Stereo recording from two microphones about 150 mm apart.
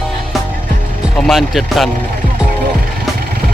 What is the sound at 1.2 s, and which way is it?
Speech, centre (ahead or behind).